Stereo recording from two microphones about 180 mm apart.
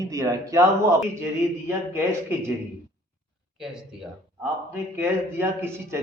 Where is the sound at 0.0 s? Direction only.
20° right (ahead or behind).